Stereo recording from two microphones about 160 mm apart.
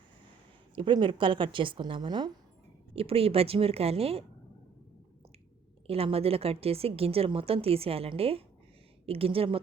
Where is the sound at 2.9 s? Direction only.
35° right (ahead or behind).